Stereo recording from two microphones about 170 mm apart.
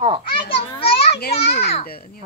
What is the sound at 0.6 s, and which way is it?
A child's voice, 30° left (ahead or behind).